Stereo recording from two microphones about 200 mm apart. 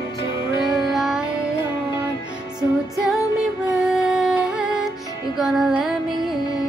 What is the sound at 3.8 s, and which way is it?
Music, centre (ahead or behind).